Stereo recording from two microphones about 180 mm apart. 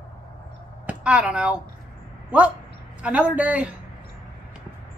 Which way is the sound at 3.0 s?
5° right (ahead or behind).